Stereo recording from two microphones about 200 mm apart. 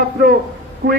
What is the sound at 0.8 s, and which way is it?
Speech, 60° right (ahead or behind).